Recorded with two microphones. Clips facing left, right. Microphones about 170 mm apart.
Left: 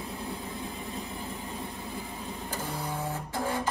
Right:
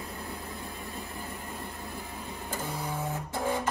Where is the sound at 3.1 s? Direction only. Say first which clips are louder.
Right 3 dB; 15° right (ahead or behind).